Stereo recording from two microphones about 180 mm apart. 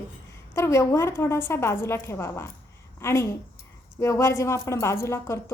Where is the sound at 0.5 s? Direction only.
15° left (ahead or behind).